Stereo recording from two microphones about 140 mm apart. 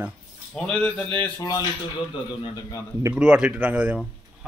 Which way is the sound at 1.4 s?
25° left (ahead or behind).